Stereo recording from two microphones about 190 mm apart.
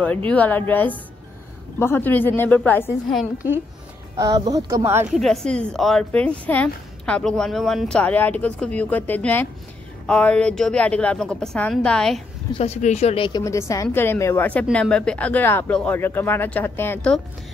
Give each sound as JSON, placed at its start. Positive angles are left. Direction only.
{"t": 0.3, "sound": "speech", "side_deg": 10}
{"t": 4.2, "sound": "speech", "side_deg": -20}
{"t": 5.1, "sound": "a woman's voice", "side_deg": 0}
{"t": 12.5, "sound": "speech", "side_deg": 35}
{"t": 13.4, "sound": "speech", "side_deg": 15}